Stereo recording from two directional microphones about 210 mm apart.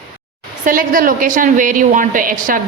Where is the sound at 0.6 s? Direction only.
40° right (ahead or behind).